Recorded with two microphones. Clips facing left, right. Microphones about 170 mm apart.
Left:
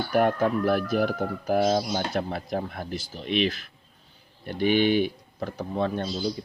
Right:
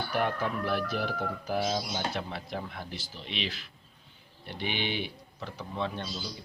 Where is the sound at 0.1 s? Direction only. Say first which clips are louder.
Left 9 dB; 50° left (ahead or behind).